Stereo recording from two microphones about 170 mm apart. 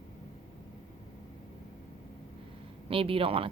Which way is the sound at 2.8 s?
35° right (ahead or behind).